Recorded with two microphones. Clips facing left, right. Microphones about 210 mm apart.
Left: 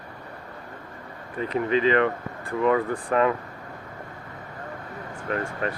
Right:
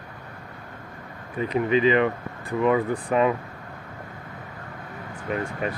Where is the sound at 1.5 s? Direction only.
15° right (ahead or behind).